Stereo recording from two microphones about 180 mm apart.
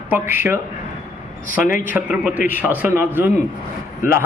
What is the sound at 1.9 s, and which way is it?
Speech, 10° right (ahead or behind).